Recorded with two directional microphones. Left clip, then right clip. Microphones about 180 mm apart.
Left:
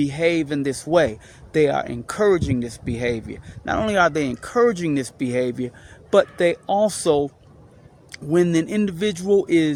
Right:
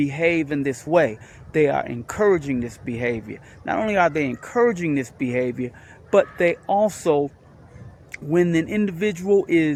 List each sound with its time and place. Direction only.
0.0 s speech: 20° left (ahead or behind)
8.3 s speech: 20° left (ahead or behind)